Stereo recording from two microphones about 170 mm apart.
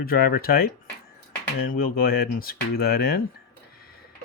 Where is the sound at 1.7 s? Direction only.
60° left (ahead or behind).